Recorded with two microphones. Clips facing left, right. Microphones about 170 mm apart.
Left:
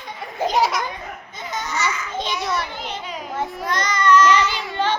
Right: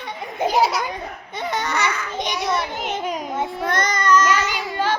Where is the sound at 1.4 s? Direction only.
65° right (ahead or behind).